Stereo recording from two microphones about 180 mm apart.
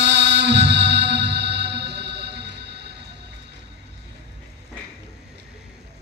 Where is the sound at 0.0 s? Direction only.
70° right (ahead or behind).